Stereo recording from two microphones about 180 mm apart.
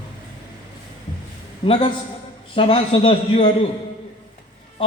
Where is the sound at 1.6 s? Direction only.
30° left (ahead or behind).